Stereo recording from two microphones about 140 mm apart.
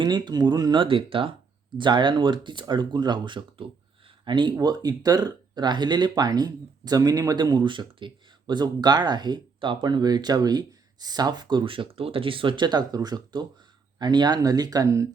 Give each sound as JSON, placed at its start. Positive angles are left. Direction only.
{"t": 0.0, "sound": "speech", "side_deg": -30}